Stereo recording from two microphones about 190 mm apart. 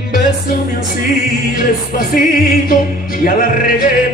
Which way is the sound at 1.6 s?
50° left (ahead or behind).